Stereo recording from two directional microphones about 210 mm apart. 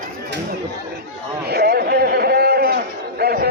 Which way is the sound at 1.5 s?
50° right (ahead or behind).